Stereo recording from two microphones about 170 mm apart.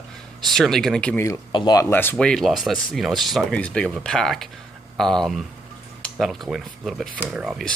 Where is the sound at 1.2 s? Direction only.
20° left (ahead or behind).